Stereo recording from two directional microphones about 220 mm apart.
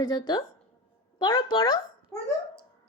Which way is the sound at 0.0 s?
20° left (ahead or behind).